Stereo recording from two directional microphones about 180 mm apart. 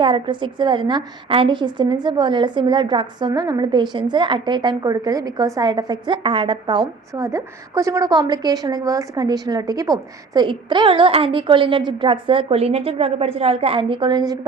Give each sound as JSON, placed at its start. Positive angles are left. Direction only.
{"t": 0.0, "sound": "a woman's voice", "side_deg": -25}